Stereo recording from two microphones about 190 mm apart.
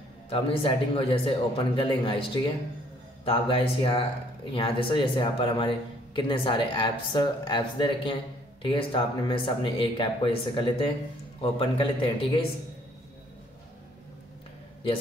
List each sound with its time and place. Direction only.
0.3 s speech: 30° left (ahead or behind)
3.3 s speech: 30° left (ahead or behind)